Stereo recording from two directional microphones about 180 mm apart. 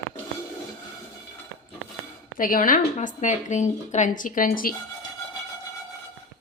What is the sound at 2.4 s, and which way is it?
Speech, 50° left (ahead or behind).